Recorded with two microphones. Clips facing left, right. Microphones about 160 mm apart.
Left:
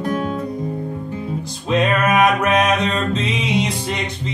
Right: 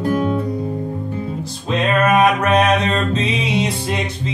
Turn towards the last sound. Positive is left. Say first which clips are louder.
# right 1 dB
turn(degrees=0)  # may be behind; listen again after turning